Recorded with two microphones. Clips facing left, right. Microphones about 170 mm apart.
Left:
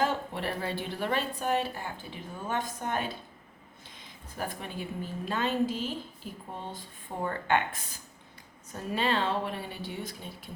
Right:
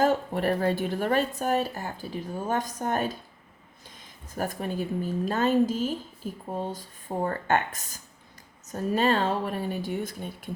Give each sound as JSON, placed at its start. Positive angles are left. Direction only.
{"t": 0.0, "sound": "speech", "side_deg": -45}
{"t": 4.4, "sound": "speech", "side_deg": -40}